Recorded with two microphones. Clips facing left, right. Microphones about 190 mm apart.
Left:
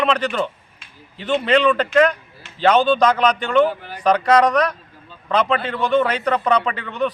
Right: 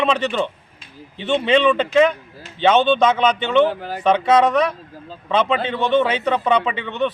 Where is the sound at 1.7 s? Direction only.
5° right (ahead or behind).